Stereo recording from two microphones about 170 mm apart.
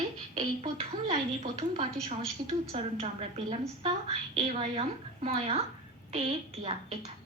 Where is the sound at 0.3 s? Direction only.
40° right (ahead or behind).